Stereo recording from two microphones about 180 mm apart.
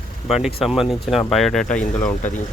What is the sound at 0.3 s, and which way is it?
Speech, centre (ahead or behind).